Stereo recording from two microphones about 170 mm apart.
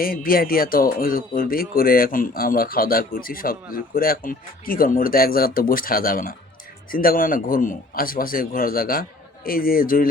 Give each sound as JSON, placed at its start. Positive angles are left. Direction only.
{"t": 0.0, "sound": "speech", "side_deg": 60}